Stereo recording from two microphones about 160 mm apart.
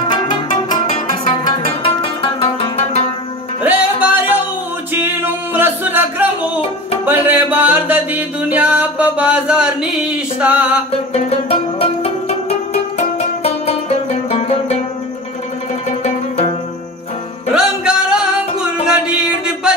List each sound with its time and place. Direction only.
0.1 s music: 30° left (ahead or behind)
3.6 s music: 10° right (ahead or behind)
11.2 s music: 40° left (ahead or behind)
17.5 s music: 5° right (ahead or behind)